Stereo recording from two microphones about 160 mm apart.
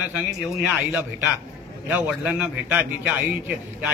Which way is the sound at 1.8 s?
10° right (ahead or behind).